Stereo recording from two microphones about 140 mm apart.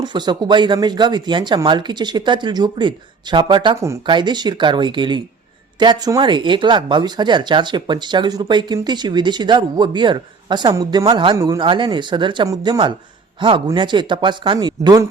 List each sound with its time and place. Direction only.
0.0 s speech: 30° right (ahead or behind)